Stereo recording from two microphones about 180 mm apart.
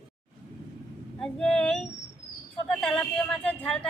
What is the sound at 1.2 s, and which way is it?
Speech, 5° left (ahead or behind).